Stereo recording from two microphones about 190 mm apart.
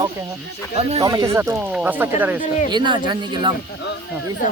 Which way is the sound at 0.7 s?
30° right (ahead or behind).